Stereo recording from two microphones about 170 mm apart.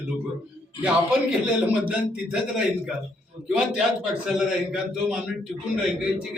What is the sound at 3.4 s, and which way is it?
A man's voice, 5° right (ahead or behind).